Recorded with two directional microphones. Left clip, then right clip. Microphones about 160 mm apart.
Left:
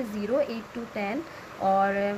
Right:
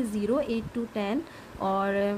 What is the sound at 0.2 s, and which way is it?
A woman's voice, 30° right (ahead or behind).